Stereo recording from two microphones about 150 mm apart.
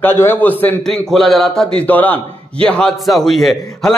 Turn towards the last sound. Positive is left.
turn(degrees=0)  # may be behind; listen again after turning